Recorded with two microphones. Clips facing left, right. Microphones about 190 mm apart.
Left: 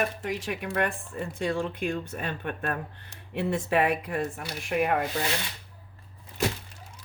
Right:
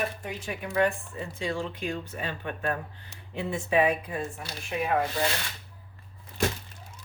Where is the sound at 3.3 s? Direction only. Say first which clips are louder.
Even; 65° left (ahead or behind).